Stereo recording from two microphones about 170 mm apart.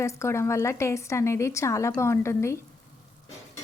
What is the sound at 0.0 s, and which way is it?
A woman's voice, 15° left (ahead or behind).